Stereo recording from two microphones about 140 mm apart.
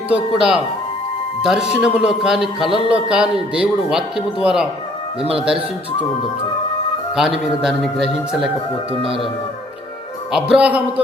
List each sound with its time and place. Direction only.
0.1 s a man's voice: 5° right (ahead or behind)
7.2 s a man's voice: 5° right (ahead or behind)
8.9 s speech: 40° right (ahead or behind)
10.3 s speech: 5° right (ahead or behind)